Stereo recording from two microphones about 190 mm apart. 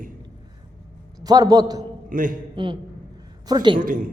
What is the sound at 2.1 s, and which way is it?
Speech, 45° right (ahead or behind).